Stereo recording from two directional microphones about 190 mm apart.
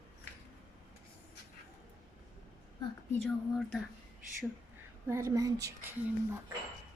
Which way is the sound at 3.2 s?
5° left (ahead or behind).